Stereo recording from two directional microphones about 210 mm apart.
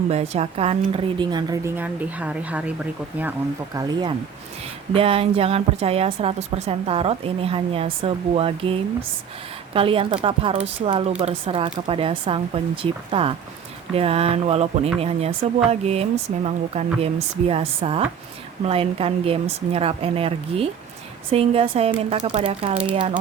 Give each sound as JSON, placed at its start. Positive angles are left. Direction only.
{"t": 0.1, "sound": "a woman's voice", "side_deg": -30}
{"t": 3.8, "sound": "a woman's voice", "side_deg": -20}